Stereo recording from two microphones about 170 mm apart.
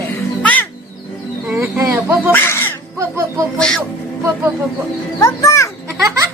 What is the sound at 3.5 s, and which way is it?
Speech, 5° left (ahead or behind).